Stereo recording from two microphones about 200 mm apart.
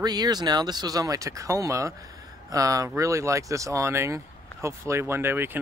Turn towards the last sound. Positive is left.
turn(degrees=-10)  # may be behind; listen again after turning